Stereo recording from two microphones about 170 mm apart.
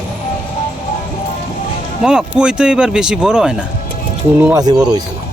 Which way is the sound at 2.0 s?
5° right (ahead or behind).